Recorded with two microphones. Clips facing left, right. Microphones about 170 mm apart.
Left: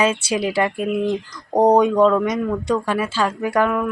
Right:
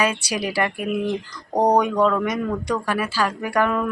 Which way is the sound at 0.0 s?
25° left (ahead or behind).